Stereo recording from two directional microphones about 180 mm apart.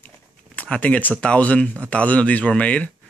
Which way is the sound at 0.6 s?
5° left (ahead or behind).